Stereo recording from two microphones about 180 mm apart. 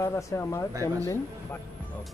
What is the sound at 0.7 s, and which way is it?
Speech, 15° right (ahead or behind).